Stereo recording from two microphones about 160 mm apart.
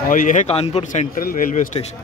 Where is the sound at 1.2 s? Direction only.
60° left (ahead or behind).